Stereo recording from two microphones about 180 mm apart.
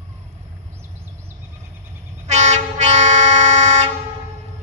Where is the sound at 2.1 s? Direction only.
40° right (ahead or behind).